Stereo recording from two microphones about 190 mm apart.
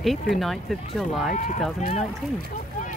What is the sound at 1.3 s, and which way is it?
Speech, 40° left (ahead or behind).